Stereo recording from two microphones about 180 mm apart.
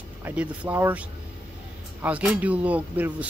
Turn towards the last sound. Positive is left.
turn(degrees=-10)  # may be behind; listen again after turning